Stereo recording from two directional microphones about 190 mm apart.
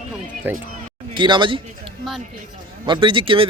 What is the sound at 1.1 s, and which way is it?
Speech, 25° right (ahead or behind).